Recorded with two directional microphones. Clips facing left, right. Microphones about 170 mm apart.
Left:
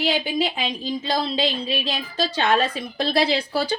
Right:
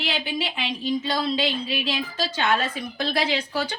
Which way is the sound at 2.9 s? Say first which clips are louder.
Left 4 dB; 35° left (ahead or behind).